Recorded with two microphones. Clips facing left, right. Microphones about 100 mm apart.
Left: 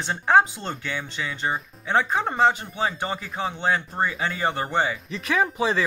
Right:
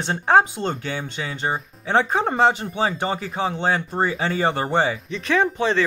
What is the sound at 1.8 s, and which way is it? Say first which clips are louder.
Speech: right 3 dB; 60° right (ahead or behind).